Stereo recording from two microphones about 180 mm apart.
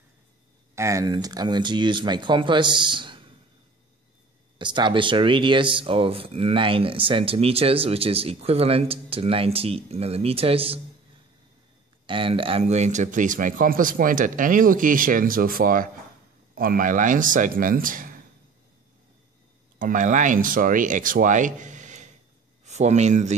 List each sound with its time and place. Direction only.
0.7 s speech: 15° right (ahead or behind)
4.6 s speech: 25° right (ahead or behind)
12.1 s a man's voice: 30° right (ahead or behind); by 18.2 s 50° right (ahead or behind)
19.8 s a man's voice: 45° right (ahead or behind)